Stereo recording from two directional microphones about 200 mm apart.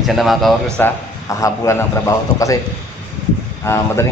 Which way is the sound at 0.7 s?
15° left (ahead or behind).